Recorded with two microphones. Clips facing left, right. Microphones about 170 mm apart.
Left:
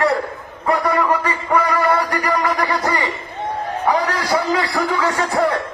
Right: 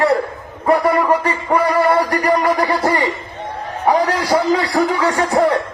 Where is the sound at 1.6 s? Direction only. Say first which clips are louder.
Right 4 dB; 10° right (ahead or behind).